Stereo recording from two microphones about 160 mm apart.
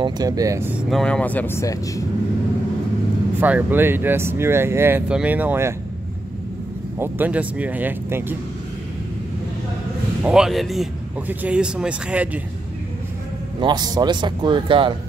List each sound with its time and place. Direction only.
0.0 s speech: 20° right (ahead or behind)
0.8 s speech: 5° left (ahead or behind); by 2.0 s 20° left (ahead or behind)
3.3 s speech: 10° right (ahead or behind)
7.0 s speech: 10° right (ahead or behind)
10.2 s speech: 5° right (ahead or behind)
13.6 s speech: 25° right (ahead or behind)